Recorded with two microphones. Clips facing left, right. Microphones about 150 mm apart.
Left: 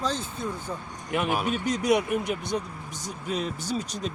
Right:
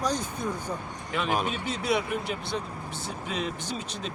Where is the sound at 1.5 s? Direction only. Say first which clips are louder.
Left 4 dB; 45° left (ahead or behind).